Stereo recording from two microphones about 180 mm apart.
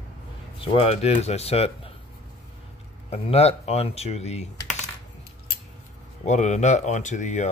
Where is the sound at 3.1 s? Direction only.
35° left (ahead or behind).